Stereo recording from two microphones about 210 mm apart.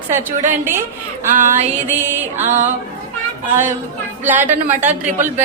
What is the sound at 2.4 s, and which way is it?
Female singing, 35° right (ahead or behind).